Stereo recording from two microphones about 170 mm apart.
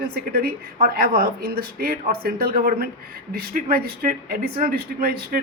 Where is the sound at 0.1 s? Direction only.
60° right (ahead or behind).